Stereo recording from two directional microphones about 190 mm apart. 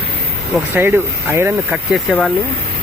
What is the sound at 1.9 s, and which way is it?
Speech, centre (ahead or behind).